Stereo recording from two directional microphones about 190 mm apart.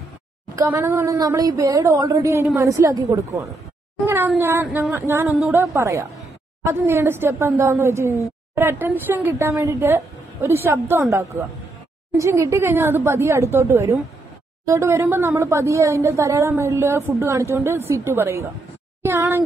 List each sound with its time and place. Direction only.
0.6 s a woman's voice: 15° right (ahead or behind)